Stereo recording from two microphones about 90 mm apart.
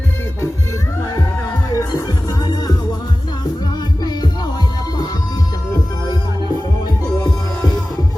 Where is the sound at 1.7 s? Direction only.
45° left (ahead or behind).